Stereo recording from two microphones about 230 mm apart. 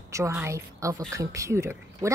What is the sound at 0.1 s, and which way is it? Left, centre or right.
A woman's voice, centre.